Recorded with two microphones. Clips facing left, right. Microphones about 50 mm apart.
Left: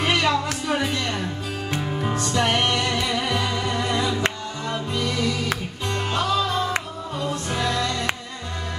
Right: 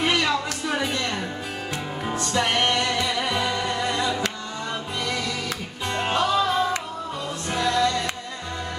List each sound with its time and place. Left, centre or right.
0.0 s music: centre
5.9 s music: centre
7.5 s music: centre